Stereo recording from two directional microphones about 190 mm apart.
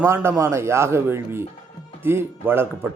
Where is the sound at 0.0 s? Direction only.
15° right (ahead or behind).